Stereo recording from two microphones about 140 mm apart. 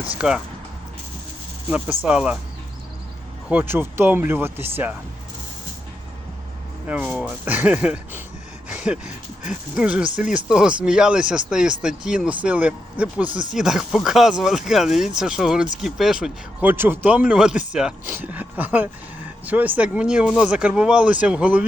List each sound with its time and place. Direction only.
0.2 s speech: 5° right (ahead or behind)
2.0 s speech: 10° right (ahead or behind)
3.5 s speech: 15° right (ahead or behind)
6.8 s speech: 10° right (ahead or behind)